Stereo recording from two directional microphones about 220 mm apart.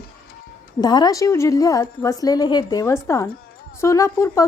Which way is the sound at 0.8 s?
20° left (ahead or behind).